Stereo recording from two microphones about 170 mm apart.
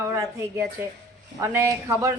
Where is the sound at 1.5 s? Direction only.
15° right (ahead or behind).